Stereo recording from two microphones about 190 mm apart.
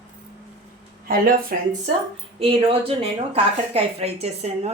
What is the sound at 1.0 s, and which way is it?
Speech, 50° right (ahead or behind).